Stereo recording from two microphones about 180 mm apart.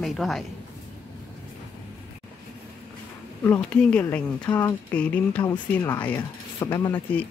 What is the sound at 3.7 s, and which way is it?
Speech, 5° left (ahead or behind).